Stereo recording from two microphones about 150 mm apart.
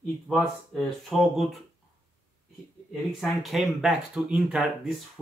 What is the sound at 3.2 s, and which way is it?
Speech, centre (ahead or behind).